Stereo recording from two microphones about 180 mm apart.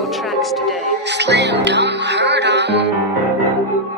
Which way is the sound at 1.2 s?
70° right (ahead or behind).